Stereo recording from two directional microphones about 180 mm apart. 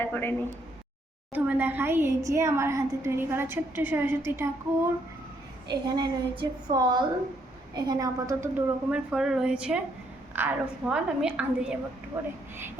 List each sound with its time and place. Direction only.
0.0 s speech: 10° left (ahead or behind)
1.3 s a woman's voice: 10° right (ahead or behind)
5.6 s a woman's voice: 25° right (ahead or behind)